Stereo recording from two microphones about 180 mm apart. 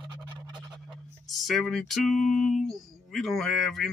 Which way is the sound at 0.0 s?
25° right (ahead or behind).